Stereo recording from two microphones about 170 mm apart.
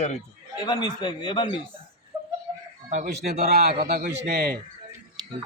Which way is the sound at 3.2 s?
70° right (ahead or behind).